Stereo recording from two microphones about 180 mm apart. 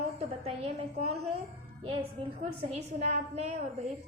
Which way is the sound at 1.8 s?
30° right (ahead or behind).